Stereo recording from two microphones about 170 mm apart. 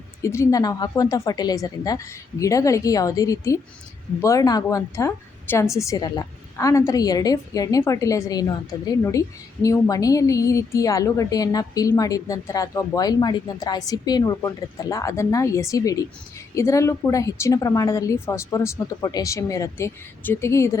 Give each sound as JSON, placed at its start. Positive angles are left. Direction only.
{"t": 0.2, "sound": "a woman's voice", "side_deg": 15}